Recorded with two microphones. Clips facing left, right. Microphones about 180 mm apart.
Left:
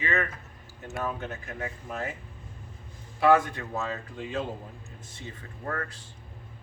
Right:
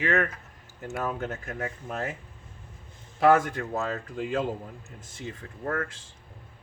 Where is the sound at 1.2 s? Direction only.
50° right (ahead or behind).